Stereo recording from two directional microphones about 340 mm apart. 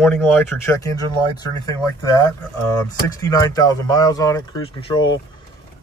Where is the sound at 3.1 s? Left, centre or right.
Centre.